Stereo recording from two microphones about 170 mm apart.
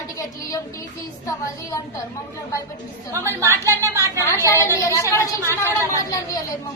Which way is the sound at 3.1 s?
15° right (ahead or behind).